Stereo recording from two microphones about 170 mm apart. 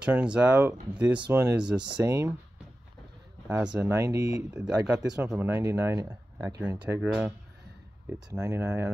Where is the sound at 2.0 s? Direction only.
20° right (ahead or behind).